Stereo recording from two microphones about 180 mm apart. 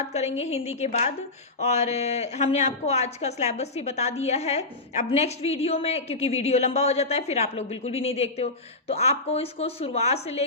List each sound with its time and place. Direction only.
0.0 s speech: 35° left (ahead or behind)